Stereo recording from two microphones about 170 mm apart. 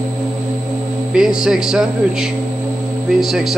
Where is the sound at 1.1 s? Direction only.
5° right (ahead or behind).